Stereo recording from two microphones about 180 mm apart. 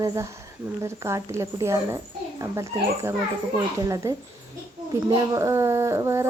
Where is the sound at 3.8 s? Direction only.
20° right (ahead or behind).